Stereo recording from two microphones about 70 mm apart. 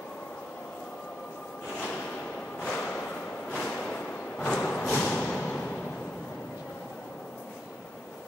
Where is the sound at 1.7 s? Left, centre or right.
Centre.